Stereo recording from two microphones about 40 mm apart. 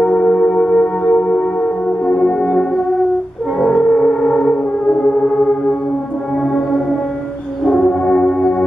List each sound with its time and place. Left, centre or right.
0.0 s singing bowl: left
2.0 s music: left
3.7 s gong: left
7.6 s music: left